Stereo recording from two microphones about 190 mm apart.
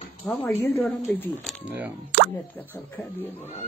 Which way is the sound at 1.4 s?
10° right (ahead or behind).